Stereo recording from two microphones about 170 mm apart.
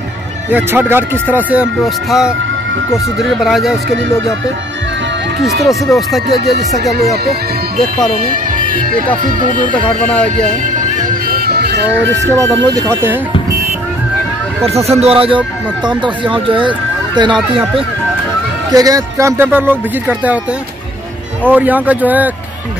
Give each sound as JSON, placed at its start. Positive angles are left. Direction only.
{"t": 0.5, "sound": "speech", "side_deg": -10}
{"t": 5.6, "sound": "speech", "side_deg": 0}
{"t": 9.7, "sound": "speech", "side_deg": 30}
{"t": 11.2, "sound": "music", "side_deg": -65}
{"t": 12.4, "sound": "speech", "side_deg": -20}
{"t": 14.7, "sound": "speech", "side_deg": -40}
{"t": 18.7, "sound": "speech", "side_deg": -20}
{"t": 21.5, "sound": "speech", "side_deg": -10}